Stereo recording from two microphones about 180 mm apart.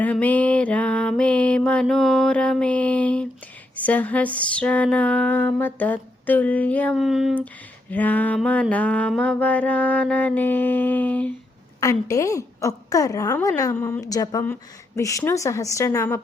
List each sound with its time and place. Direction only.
0.0 s music: 10° left (ahead or behind)
3.8 s a woman's voice: 10° left (ahead or behind)
7.9 s a woman's voice: 10° left (ahead or behind)